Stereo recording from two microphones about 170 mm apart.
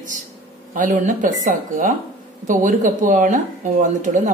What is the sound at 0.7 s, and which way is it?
Speech, 50° right (ahead or behind).